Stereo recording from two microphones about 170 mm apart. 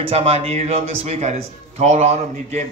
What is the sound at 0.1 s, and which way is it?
A man's voice, 35° right (ahead or behind).